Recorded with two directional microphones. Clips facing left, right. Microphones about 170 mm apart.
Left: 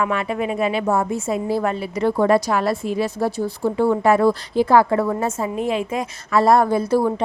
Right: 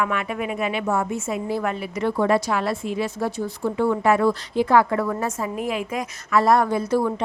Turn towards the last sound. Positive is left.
turn(degrees=35)  # may be behind; listen again after turning